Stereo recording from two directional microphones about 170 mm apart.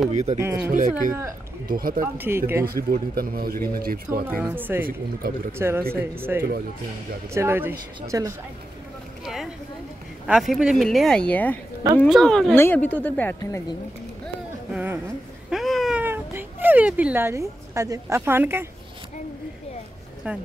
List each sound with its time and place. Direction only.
0.1 s speech: 40° right (ahead or behind)
0.7 s speech: 50° right (ahead or behind)
2.1 s speech: 15° right (ahead or behind)
2.6 s speech: 60° right (ahead or behind)
4.3 s speech: 10° right (ahead or behind)
5.2 s speech: 60° right (ahead or behind)
5.6 s speech: 15° right (ahead or behind)
9.2 s a sound: centre (ahead or behind)
10.2 s speech: 5° right (ahead or behind)
13.4 s a woman's voice: 20° left (ahead or behind)
14.7 s a woman's voice: 10° right (ahead or behind)
20.2 s speech: 10° right (ahead or behind)